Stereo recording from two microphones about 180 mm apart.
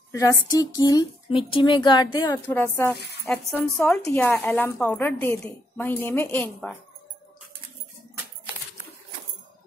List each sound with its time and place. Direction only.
0.1 s speech: 20° left (ahead or behind)
2.5 s a woman's voice: 10° left (ahead or behind)